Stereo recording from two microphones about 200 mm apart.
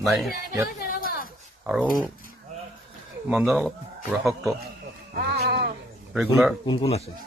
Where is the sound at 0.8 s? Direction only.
45° left (ahead or behind).